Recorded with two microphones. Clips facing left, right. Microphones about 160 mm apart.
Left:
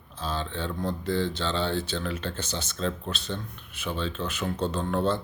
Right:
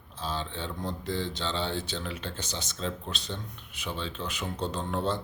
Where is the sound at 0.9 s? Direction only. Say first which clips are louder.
Left 5 dB; 15° right (ahead or behind).